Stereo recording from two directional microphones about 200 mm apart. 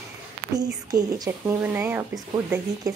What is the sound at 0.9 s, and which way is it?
A woman's voice, 20° right (ahead or behind).